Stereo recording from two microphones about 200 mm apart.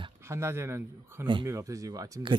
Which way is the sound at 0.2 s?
15° right (ahead or behind).